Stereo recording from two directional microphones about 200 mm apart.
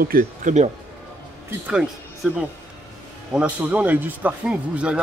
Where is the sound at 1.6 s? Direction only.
5° right (ahead or behind).